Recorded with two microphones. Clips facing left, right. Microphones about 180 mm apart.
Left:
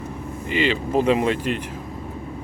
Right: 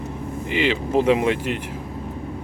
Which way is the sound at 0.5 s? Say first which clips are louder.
Even; 15° right (ahead or behind).